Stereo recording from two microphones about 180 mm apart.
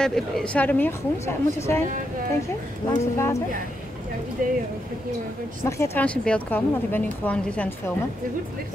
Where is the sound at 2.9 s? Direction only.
15° left (ahead or behind).